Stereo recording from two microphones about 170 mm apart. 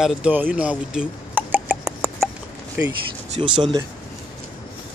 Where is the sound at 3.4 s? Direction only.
25° right (ahead or behind).